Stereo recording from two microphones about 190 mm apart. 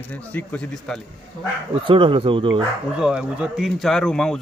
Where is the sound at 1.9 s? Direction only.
25° right (ahead or behind).